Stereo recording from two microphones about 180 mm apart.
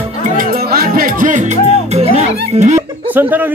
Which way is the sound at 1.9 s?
35° right (ahead or behind).